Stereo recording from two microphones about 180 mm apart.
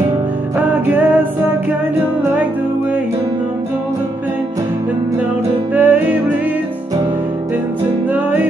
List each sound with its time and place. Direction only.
0.6 s music: 10° right (ahead or behind)
5.8 s music: 10° right (ahead or behind)
8.1 s music: 10° right (ahead or behind)